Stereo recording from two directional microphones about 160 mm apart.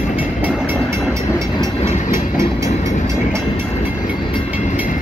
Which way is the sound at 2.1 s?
15° right (ahead or behind).